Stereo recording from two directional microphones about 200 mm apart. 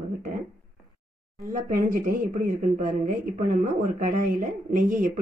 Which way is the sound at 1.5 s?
45° right (ahead or behind).